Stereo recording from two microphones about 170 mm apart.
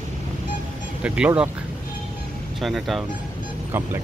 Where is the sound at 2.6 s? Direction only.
Centre (ahead or behind).